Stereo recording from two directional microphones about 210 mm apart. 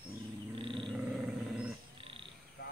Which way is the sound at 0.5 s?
25° right (ahead or behind).